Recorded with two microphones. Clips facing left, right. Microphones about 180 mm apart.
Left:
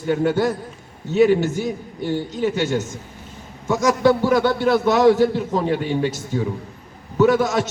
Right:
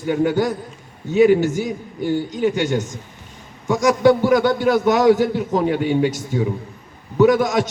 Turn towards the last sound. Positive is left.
turn(degrees=-15)  # may be behind; listen again after turning